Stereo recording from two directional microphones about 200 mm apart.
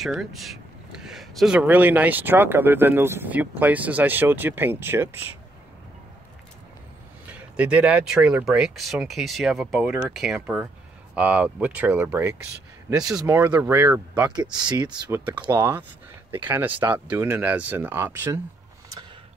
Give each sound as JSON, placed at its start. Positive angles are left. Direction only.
{"t": 0.0, "sound": "speech", "side_deg": 0}
{"t": 7.5, "sound": "speech", "side_deg": -5}
{"t": 14.9, "sound": "speech", "side_deg": -10}